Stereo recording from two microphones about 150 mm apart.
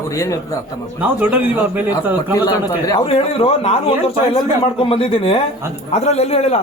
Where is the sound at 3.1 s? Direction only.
40° left (ahead or behind).